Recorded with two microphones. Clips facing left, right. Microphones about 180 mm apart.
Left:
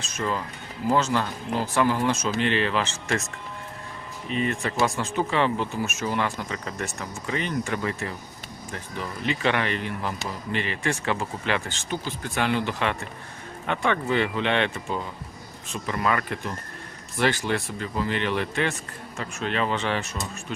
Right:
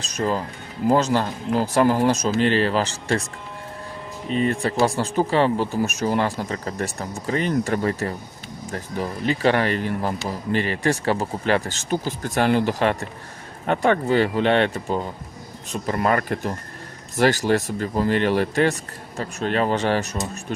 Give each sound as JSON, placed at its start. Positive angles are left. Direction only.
{"t": 0.0, "sound": "speech", "side_deg": -35}
{"t": 4.3, "sound": "speech", "side_deg": -35}